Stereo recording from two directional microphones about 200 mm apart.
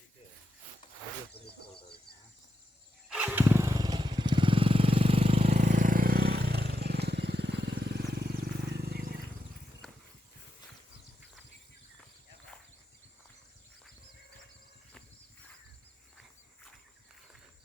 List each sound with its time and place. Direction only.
1.3 s a sound: 55° left (ahead or behind)
3.1 s motorcycle: 5° right (ahead or behind); by 9.1 s 50° right (ahead or behind)
9.8 s horse: 5° left (ahead or behind)